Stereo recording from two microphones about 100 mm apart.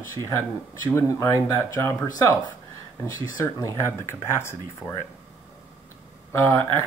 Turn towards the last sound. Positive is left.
turn(degrees=25)  # may be behind; listen again after turning